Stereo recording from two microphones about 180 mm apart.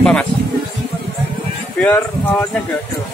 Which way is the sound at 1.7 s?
10° left (ahead or behind).